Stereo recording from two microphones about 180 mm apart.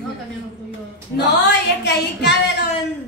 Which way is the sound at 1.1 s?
70° left (ahead or behind).